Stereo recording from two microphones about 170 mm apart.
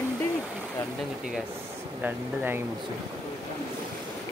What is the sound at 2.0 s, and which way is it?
Speech, 10° right (ahead or behind).